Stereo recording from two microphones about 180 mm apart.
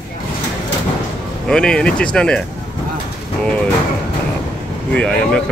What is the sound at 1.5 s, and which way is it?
Speech, 5° left (ahead or behind).